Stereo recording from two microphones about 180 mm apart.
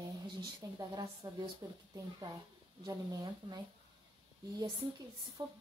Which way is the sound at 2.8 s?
20° right (ahead or behind).